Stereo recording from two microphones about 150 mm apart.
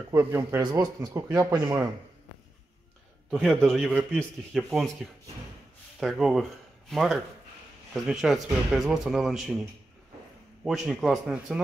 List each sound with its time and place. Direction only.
0.1 s speech: 15° right (ahead or behind)
0.6 s speech: 25° right (ahead or behind)
3.3 s a man's voice: centre (ahead or behind)
5.9 s a man's voice: centre (ahead or behind)
10.6 s a man's voice: centre (ahead or behind)